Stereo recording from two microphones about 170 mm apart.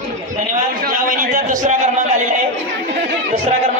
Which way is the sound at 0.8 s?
55° right (ahead or behind).